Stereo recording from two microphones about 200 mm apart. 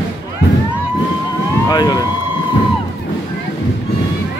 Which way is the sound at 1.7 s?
20° left (ahead or behind).